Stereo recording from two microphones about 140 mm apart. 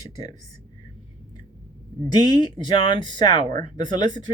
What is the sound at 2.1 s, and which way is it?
Speech, 30° left (ahead or behind).